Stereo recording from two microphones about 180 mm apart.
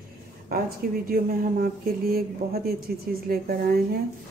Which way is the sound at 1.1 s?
55° right (ahead or behind).